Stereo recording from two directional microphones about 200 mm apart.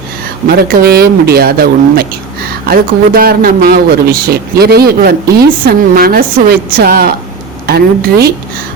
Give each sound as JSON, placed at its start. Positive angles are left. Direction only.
{"t": 0.4, "sound": "speech", "side_deg": -50}